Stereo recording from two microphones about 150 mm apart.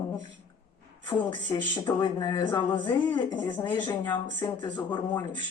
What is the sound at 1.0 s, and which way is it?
Speech, 25° left (ahead or behind).